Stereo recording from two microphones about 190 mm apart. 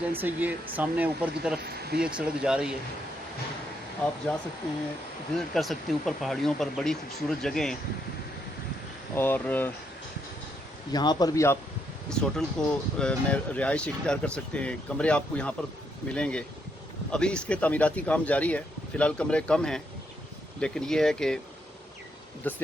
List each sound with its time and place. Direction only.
0.1 s speech: 10° right (ahead or behind)
1.6 s speech: 55° right (ahead or behind)
2.0 s speech: 5° right (ahead or behind)
5.5 s speech: centre (ahead or behind)
9.1 s speech: 10° left (ahead or behind)
10.9 s speech: 20° left (ahead or behind)
12.0 s speech: 5° left (ahead or behind)
22.4 s speech: 10° left (ahead or behind)